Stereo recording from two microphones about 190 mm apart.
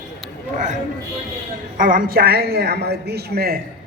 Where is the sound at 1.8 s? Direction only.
45° right (ahead or behind).